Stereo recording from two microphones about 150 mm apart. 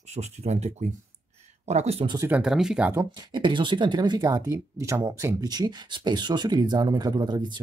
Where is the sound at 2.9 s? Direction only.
20° right (ahead or behind).